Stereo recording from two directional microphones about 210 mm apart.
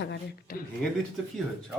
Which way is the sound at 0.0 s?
50° left (ahead or behind).